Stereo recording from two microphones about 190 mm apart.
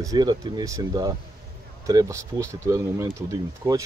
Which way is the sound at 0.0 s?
20° right (ahead or behind).